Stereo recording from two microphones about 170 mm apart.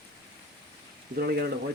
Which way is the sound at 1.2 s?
65° right (ahead or behind).